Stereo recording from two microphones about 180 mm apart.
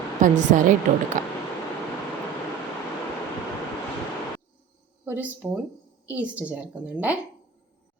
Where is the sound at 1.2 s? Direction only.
45° right (ahead or behind).